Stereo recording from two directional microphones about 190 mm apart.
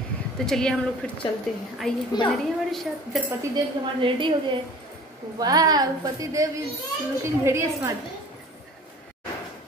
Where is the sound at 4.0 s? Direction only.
25° right (ahead or behind).